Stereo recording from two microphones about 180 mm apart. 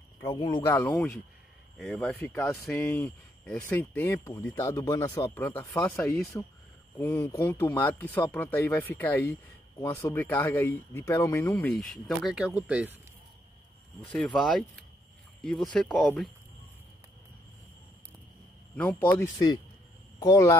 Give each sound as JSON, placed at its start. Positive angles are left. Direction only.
{"t": 0.2, "sound": "speech", "side_deg": 25}
{"t": 0.7, "sound": "speech", "side_deg": 15}
{"t": 1.8, "sound": "speech", "side_deg": 5}
{"t": 12.2, "sound": "speech", "side_deg": -5}
{"t": 14.1, "sound": "speech", "side_deg": 5}
{"t": 18.8, "sound": "speech", "side_deg": 10}